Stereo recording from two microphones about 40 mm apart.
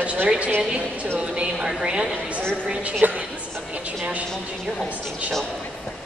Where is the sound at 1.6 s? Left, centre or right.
Right.